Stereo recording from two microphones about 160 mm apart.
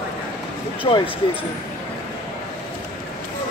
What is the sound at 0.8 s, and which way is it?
Speech, 35° left (ahead or behind).